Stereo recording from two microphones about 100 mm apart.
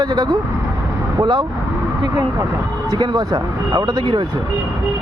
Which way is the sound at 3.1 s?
40° right (ahead or behind).